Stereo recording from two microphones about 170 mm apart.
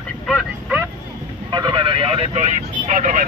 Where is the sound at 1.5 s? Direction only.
25° right (ahead or behind).